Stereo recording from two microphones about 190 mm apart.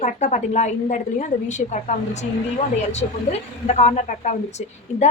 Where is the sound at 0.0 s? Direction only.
40° left (ahead or behind).